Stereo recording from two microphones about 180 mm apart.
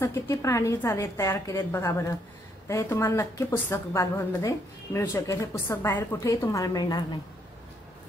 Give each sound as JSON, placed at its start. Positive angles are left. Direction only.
{"t": 0.0, "sound": "a woman's voice", "side_deg": 15}